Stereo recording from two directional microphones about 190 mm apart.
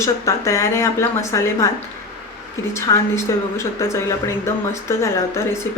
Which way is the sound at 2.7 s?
15° left (ahead or behind).